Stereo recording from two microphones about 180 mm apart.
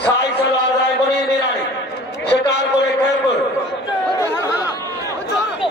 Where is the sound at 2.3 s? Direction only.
70° left (ahead or behind).